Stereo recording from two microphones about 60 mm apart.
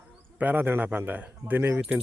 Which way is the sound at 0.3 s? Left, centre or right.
Right.